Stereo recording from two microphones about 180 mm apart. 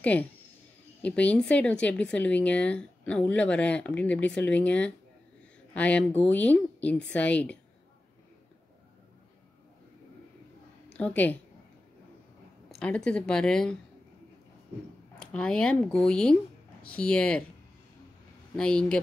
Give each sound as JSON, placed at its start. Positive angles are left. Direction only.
{"t": 0.0, "sound": "speech", "side_deg": 10}
{"t": 10.9, "sound": "a woman's voice", "side_deg": 5}
{"t": 12.6, "sound": "speech", "side_deg": 5}
{"t": 15.1, "sound": "speech", "side_deg": 5}
{"t": 18.6, "sound": "speech", "side_deg": 5}